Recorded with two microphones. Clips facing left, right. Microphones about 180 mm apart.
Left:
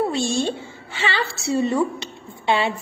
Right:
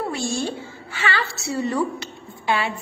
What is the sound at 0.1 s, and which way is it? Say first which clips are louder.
A woman's voice: left 3 dB; 25° left (ahead or behind).